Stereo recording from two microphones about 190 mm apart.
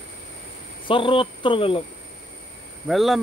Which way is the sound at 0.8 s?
25° left (ahead or behind).